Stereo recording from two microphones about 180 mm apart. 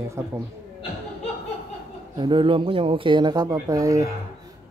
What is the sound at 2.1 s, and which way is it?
Speech, 25° right (ahead or behind).